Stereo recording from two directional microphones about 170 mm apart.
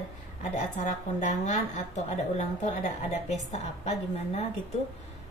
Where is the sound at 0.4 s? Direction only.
45° left (ahead or behind).